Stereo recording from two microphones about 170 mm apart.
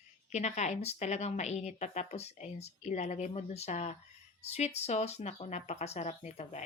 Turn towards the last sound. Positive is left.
turn(degrees=40)  # may be behind; listen again after turning